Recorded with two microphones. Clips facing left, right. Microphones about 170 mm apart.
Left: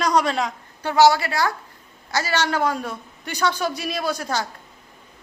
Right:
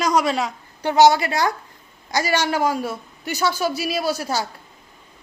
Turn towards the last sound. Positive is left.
turn(degrees=-10)  # may be behind; listen again after turning